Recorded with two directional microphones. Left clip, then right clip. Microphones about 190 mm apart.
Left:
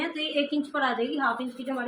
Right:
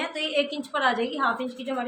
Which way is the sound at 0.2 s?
50° right (ahead or behind).